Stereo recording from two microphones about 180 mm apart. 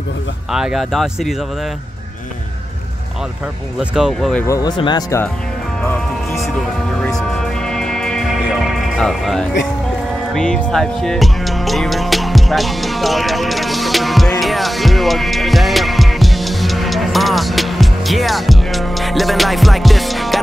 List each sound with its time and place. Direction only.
0.5 s speech: 5° right (ahead or behind)
3.9 s speech: centre (ahead or behind)
4.5 s speech: 20° left (ahead or behind)
7.0 s music: 5° left (ahead or behind)